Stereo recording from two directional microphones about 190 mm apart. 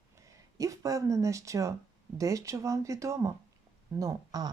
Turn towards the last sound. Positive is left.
turn(degrees=-20)  # may be behind; listen again after turning